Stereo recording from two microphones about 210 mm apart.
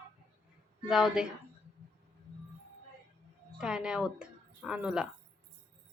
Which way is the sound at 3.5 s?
5° right (ahead or behind).